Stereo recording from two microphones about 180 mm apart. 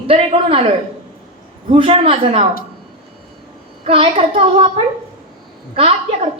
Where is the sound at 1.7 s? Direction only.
35° right (ahead or behind).